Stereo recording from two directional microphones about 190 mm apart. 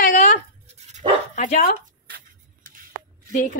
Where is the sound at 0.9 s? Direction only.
40° right (ahead or behind).